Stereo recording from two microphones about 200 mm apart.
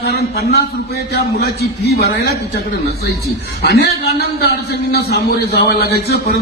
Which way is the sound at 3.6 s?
55° left (ahead or behind).